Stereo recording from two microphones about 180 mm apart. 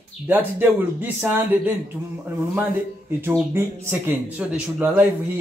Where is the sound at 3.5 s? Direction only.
15° right (ahead or behind).